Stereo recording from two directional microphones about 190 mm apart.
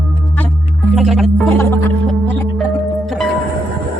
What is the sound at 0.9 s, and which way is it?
Speech, centre (ahead or behind).